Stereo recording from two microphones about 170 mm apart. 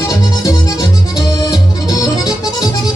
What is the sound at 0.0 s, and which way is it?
Music, 20° left (ahead or behind).